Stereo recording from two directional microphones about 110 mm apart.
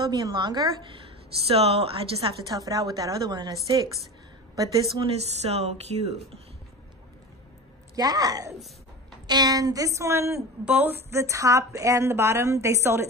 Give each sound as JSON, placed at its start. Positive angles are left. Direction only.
{"t": 0.0, "sound": "a woman's voice", "side_deg": -40}
{"t": 1.5, "sound": "speech", "side_deg": -65}
{"t": 2.5, "sound": "a woman's voice", "side_deg": -35}
{"t": 5.0, "sound": "speech", "side_deg": -75}
{"t": 7.9, "sound": "a woman's voice", "side_deg": -35}
{"t": 10.6, "sound": "a woman's voice", "side_deg": -15}